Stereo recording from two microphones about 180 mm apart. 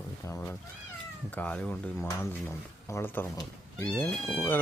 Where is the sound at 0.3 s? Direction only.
10° left (ahead or behind).